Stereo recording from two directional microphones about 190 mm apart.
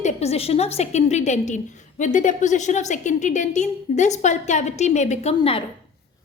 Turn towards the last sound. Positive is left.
turn(degrees=30)  # may be behind; listen again after turning